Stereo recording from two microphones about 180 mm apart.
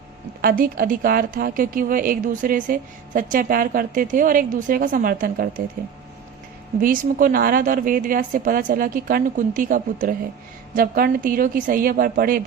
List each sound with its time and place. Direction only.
0.4 s a woman's voice: 50° right (ahead or behind)
6.7 s a woman's voice: 50° right (ahead or behind)